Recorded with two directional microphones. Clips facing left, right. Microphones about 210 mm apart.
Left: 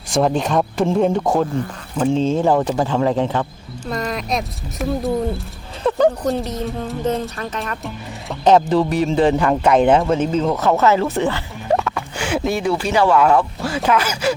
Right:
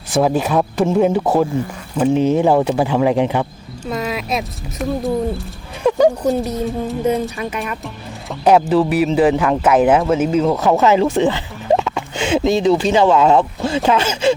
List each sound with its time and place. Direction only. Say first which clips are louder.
0.1 s a man's voice: right 2 dB; 5° right (ahead or behind)
3.8 s speech: right 1 dB; 5° right (ahead or behind)
5.8 s a man's voice: right 3 dB; 10° right (ahead or behind)